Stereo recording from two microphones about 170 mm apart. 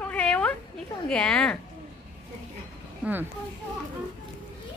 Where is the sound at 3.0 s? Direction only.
5° right (ahead or behind).